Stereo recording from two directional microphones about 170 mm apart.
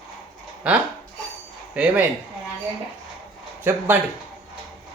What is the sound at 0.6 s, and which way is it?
Speech, 5° right (ahead or behind).